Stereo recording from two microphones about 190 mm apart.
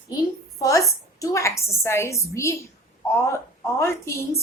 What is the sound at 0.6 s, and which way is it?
A woman's voice, 15° left (ahead or behind).